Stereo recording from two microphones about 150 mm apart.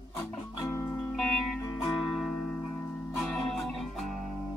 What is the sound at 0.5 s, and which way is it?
Music, 20° left (ahead or behind).